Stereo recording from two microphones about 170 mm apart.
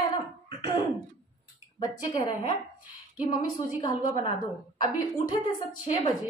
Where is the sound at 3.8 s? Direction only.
25° left (ahead or behind).